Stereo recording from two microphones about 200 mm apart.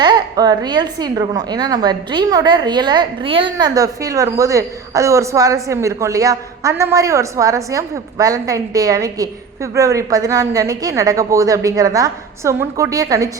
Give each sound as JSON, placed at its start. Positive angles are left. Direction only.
{"t": 0.0, "sound": "a woman's voice", "side_deg": -20}